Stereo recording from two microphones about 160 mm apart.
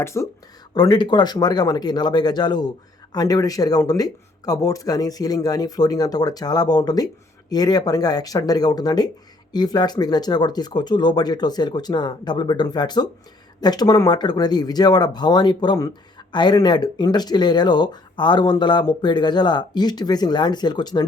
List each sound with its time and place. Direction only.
0.0 s speech: 15° left (ahead or behind)